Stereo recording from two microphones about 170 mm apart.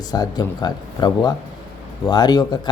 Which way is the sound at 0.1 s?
25° left (ahead or behind).